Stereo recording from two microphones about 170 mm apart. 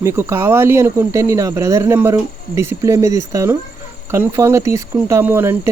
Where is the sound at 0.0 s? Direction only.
15° right (ahead or behind).